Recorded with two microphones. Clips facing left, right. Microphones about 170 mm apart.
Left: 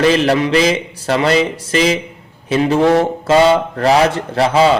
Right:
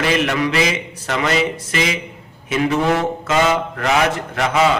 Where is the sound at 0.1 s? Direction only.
30° left (ahead or behind).